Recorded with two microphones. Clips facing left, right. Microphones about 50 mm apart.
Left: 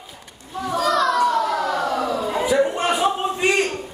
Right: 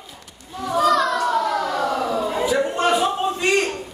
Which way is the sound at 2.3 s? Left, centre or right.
Centre.